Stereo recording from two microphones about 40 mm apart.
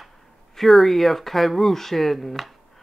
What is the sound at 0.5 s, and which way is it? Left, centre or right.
Speech, centre.